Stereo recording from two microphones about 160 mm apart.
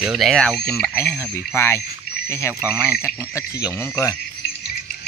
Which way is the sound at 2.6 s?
5° right (ahead or behind).